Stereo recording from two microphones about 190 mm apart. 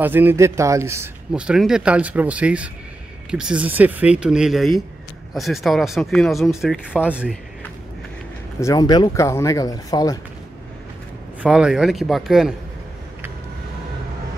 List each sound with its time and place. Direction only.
0.0 s a man's voice: 10° right (ahead or behind)
8.5 s speech: 20° left (ahead or behind)
11.4 s speech: 5° right (ahead or behind)